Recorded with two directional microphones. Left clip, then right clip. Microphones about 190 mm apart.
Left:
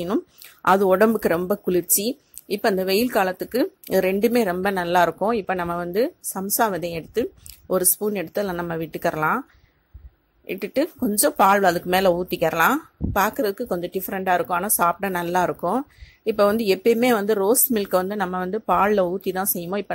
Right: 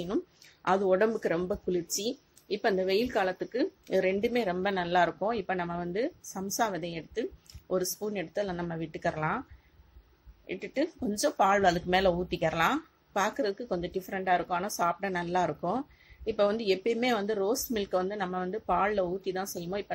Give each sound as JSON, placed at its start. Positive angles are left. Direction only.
{"t": 0.0, "sound": "speech", "side_deg": 45}
{"t": 10.4, "sound": "speech", "side_deg": 45}